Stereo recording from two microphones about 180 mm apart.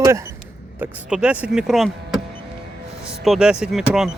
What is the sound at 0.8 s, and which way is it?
Speech, 5° right (ahead or behind).